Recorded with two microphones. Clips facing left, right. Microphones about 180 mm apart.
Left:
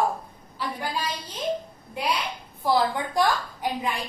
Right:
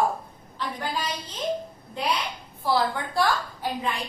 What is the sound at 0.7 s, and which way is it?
Speech, 10° left (ahead or behind).